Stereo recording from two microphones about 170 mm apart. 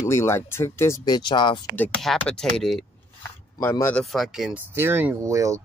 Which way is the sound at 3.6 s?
15° left (ahead or behind).